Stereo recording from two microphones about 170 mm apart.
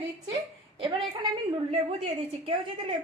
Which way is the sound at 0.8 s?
35° right (ahead or behind).